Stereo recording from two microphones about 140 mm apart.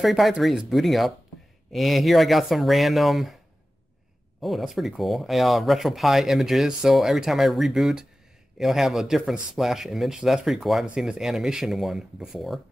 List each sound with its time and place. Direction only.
0.0 s speech: centre (ahead or behind)
4.4 s speech: centre (ahead or behind)